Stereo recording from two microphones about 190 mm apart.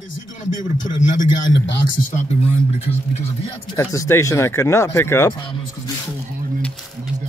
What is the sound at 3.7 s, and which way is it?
Speech, 15° left (ahead or behind).